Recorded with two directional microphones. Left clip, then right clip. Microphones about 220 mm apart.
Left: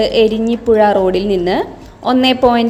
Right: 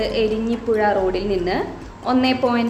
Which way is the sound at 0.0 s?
35° left (ahead or behind).